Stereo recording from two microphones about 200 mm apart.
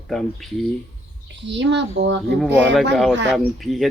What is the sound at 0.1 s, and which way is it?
Speech, centre (ahead or behind).